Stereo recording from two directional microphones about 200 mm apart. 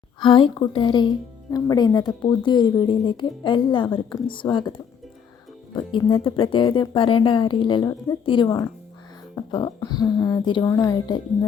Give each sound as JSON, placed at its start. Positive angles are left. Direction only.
{"t": 0.2, "sound": "speech", "side_deg": 25}
{"t": 5.7, "sound": "speech", "side_deg": 25}